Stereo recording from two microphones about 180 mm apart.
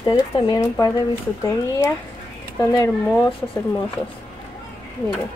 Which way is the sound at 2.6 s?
15° left (ahead or behind).